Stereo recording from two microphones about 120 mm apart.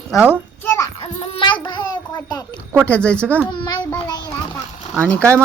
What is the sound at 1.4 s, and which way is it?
Child singing, 40° left (ahead or behind).